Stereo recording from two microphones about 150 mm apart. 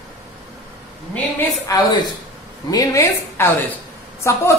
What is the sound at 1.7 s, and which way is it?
A man's voice, 25° left (ahead or behind).